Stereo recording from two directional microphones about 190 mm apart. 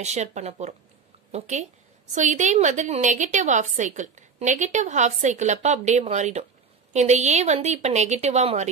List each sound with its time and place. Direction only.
0.0 s a woman's voice: 35° right (ahead or behind)